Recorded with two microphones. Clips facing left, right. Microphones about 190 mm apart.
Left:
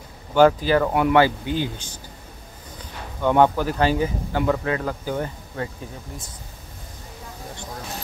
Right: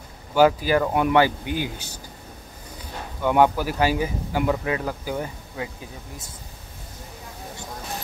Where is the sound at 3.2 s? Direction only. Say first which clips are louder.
Left 1 dB; 10° right (ahead or behind).